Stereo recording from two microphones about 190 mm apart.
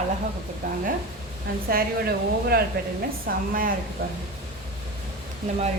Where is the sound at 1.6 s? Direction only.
55° right (ahead or behind).